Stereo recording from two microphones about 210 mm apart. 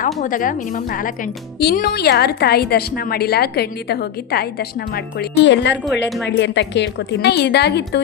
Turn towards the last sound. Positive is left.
turn(degrees=50)  # may be behind; listen again after turning